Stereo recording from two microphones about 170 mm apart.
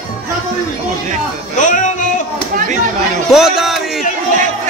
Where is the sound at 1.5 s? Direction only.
50° left (ahead or behind).